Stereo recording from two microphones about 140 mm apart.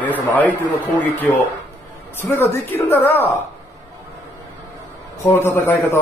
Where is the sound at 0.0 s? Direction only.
10° left (ahead or behind).